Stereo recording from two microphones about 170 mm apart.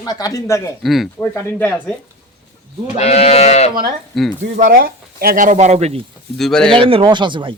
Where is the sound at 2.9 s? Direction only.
40° left (ahead or behind).